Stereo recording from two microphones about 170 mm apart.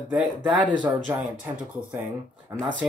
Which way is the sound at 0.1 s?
5° right (ahead or behind).